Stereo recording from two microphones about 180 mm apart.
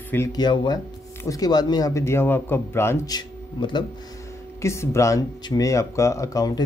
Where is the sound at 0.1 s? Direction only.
15° left (ahead or behind).